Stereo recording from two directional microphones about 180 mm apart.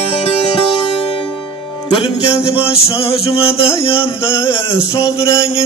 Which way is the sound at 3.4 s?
30° left (ahead or behind).